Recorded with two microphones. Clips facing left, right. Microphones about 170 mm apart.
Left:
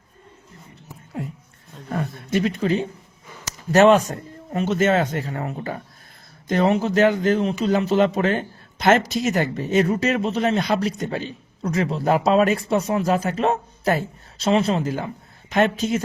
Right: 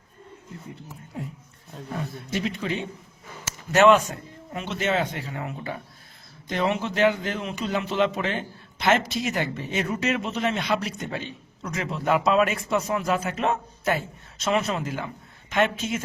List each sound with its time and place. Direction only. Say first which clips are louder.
1.9 s a man's voice: left 6 dB; 55° left (ahead or behind); by 16.0 s 40° left (ahead or behind)